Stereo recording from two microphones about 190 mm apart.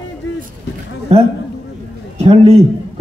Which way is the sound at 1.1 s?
30° right (ahead or behind).